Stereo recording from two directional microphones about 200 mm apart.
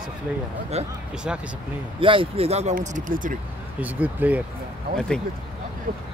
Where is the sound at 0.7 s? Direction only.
30° right (ahead or behind).